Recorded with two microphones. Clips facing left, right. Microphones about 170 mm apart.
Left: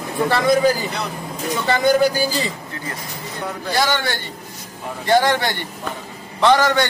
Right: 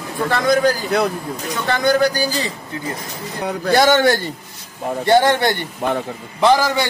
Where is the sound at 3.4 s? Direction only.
70° right (ahead or behind).